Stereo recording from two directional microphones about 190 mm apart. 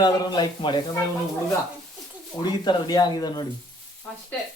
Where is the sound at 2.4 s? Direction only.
20° left (ahead or behind).